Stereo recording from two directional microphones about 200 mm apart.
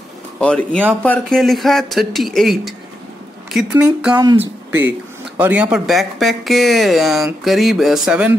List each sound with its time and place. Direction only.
0.4 s speech: 5° left (ahead or behind)
4.1 s speech: 20° right (ahead or behind)